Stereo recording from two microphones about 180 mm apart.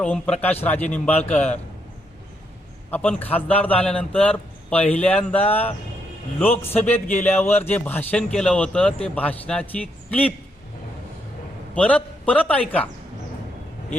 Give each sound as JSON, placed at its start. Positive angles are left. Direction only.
{"t": 0.0, "sound": "a man's voice", "side_deg": 5}
{"t": 2.9, "sound": "a man's voice", "side_deg": 10}
{"t": 11.7, "sound": "a man's voice", "side_deg": 5}